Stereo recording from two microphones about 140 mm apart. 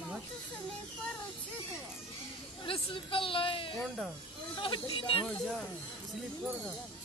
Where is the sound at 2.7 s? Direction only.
40° left (ahead or behind).